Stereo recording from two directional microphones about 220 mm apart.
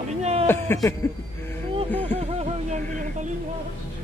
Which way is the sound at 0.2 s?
30° right (ahead or behind).